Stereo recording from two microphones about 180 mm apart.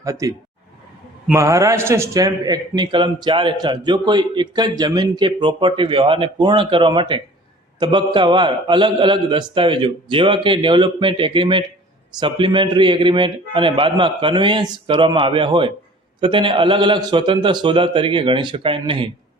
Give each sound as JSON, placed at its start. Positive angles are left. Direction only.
{"t": 0.0, "sound": "a man's voice", "side_deg": -20}